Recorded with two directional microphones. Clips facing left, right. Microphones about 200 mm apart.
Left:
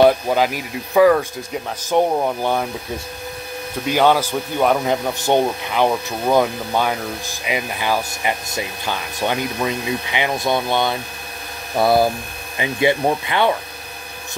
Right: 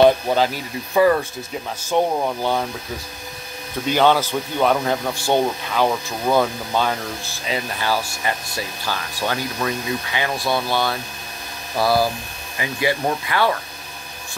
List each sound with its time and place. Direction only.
0.3 s speech: 10° left (ahead or behind)
3.9 s speech: 10° left (ahead or behind)